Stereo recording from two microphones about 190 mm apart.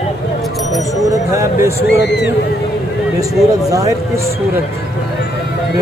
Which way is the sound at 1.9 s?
65° left (ahead or behind).